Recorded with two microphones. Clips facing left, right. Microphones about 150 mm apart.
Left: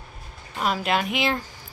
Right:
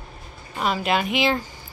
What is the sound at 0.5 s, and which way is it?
Speech, centre (ahead or behind).